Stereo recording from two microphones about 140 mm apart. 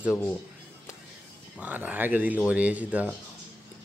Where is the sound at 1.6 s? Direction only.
10° right (ahead or behind).